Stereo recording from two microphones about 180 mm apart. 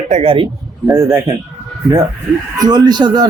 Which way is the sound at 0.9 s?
15° right (ahead or behind).